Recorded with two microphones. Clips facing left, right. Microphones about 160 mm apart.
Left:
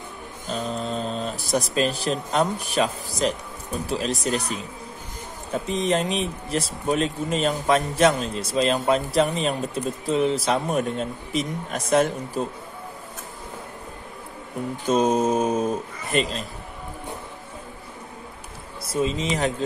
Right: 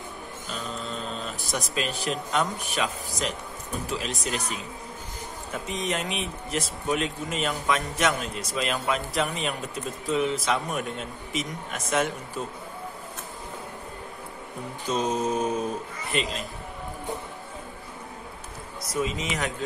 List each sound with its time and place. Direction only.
0.5 s speech: 40° left (ahead or behind)
5.5 s speech: 35° left (ahead or behind)
14.9 s speech: 40° left (ahead or behind)
18.9 s speech: 30° left (ahead or behind)